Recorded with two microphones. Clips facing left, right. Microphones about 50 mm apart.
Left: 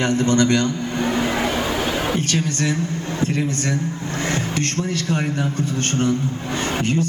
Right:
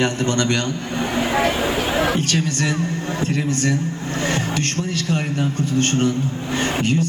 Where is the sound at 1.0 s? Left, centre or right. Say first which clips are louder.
Right 2 dB; centre.